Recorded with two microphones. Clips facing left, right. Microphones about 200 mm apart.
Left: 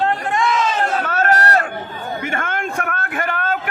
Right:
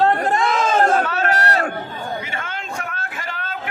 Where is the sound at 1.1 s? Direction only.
45° left (ahead or behind).